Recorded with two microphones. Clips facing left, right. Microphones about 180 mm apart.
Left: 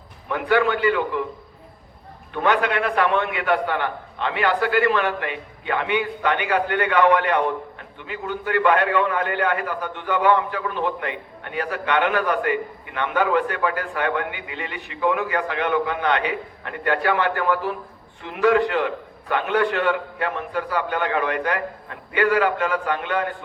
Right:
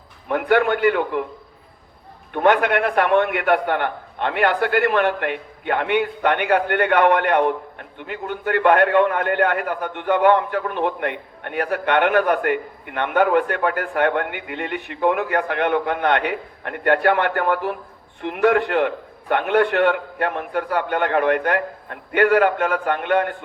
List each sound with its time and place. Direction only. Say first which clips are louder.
0.3 s a man's voice: right 2 dB; 55° right (ahead or behind)
2.3 s a man's voice: right 4 dB; 55° right (ahead or behind)